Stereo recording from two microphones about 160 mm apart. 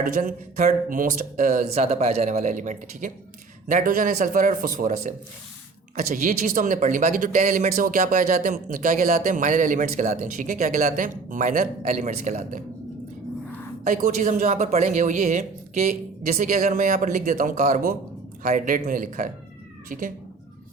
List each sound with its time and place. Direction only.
0.0 s speech: 55° right (ahead or behind)
13.8 s speech: 55° right (ahead or behind)